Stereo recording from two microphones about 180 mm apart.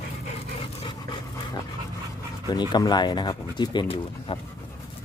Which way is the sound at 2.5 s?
25° left (ahead or behind).